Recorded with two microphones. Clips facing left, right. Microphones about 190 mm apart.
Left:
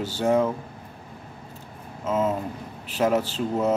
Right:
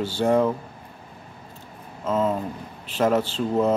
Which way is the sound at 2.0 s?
5° left (ahead or behind).